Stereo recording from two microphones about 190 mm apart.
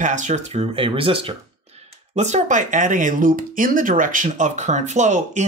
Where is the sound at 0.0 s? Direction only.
40° right (ahead or behind).